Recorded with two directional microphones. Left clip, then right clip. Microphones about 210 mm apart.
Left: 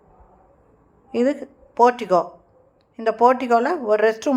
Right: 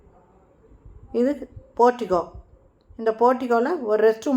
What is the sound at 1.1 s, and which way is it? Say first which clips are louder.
A woman's voice: left 2 dB; 25° left (ahead or behind).